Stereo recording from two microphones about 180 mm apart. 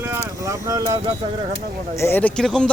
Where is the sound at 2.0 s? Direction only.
10° left (ahead or behind).